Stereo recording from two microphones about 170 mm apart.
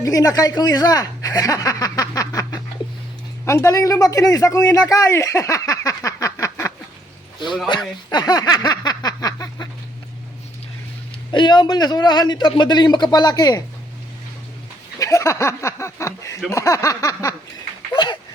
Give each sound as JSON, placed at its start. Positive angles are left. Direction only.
{"t": 0.0, "sound": "speech", "side_deg": 20}
{"t": 8.1, "sound": "a sound", "side_deg": 25}
{"t": 11.3, "sound": "a man's voice", "side_deg": 25}
{"t": 14.9, "sound": "a man's voice", "side_deg": 20}